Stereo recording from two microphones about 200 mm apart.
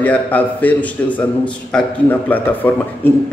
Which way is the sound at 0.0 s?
10° left (ahead or behind).